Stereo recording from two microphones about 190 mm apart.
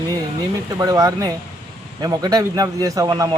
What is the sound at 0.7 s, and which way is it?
Speech, 20° right (ahead or behind).